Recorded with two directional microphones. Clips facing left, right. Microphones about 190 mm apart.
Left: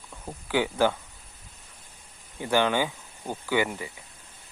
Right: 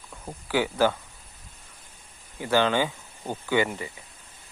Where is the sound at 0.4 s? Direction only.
15° left (ahead or behind).